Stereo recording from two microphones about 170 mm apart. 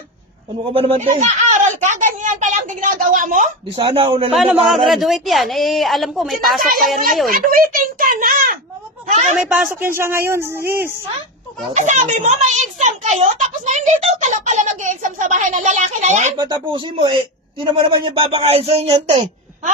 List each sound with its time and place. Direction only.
0.7 s a child's voice: 35° right (ahead or behind)
3.8 s speech: 30° right (ahead or behind)
4.4 s speech: centre (ahead or behind)
7.3 s a child's voice: 55° right (ahead or behind)
9.0 s a sound: 45° right (ahead or behind)
9.3 s speech: 5° right (ahead or behind)
11.7 s a child's voice: 45° right (ahead or behind)
16.4 s speech: 25° right (ahead or behind)